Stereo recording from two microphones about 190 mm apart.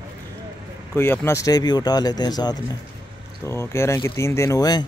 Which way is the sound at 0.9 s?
10° left (ahead or behind).